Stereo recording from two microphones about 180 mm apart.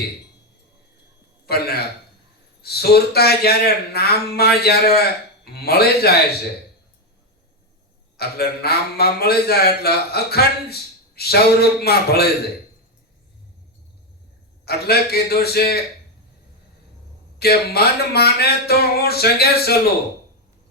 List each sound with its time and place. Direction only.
1.5 s a man's voice: 60° left (ahead or behind)
8.1 s a man's voice: 60° left (ahead or behind)
14.6 s a man's voice: 60° left (ahead or behind)
17.4 s a man's voice: 60° left (ahead or behind)